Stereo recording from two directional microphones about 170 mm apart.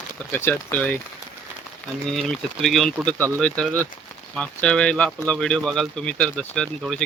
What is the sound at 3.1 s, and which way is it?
Speech, 15° right (ahead or behind).